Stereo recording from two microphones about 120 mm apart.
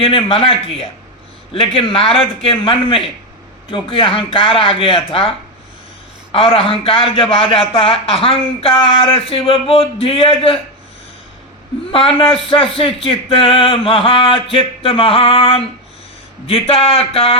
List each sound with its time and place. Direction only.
0.0 s speech: 50° left (ahead or behind)
6.3 s speech: 50° left (ahead or behind)
11.9 s speech: 50° left (ahead or behind)